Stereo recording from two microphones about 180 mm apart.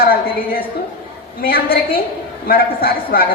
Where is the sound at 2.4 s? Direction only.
55° left (ahead or behind).